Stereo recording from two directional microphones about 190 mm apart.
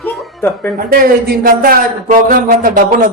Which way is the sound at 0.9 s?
55° right (ahead or behind).